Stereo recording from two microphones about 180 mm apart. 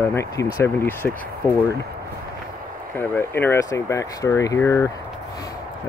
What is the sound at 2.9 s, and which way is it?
Speech, 10° left (ahead or behind).